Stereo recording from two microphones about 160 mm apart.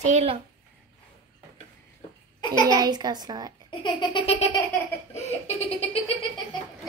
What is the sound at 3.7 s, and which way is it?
Baby laughter, 30° left (ahead or behind).